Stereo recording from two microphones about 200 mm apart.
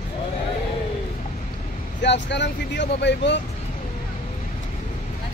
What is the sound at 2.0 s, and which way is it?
Speech, 60° left (ahead or behind).